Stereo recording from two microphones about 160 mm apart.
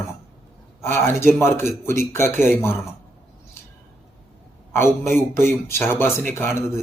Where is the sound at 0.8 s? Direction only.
15° left (ahead or behind).